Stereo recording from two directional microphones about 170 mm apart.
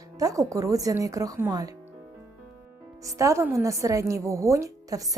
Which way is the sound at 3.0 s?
20° right (ahead or behind).